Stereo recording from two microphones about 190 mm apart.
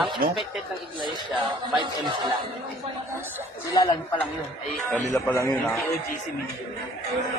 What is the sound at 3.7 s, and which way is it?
Speech, 20° left (ahead or behind).